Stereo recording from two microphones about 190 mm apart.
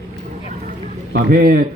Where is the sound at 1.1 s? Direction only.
50° right (ahead or behind).